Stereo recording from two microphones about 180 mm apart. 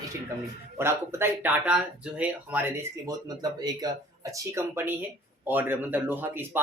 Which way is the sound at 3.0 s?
20° right (ahead or behind).